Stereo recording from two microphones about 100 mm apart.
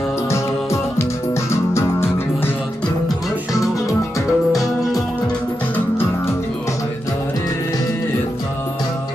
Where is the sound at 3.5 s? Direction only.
35° left (ahead or behind).